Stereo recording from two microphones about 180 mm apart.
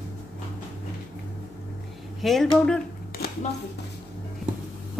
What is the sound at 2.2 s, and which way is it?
Speech, centre (ahead or behind).